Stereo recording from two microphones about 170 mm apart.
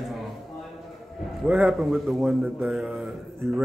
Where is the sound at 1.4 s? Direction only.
10° right (ahead or behind).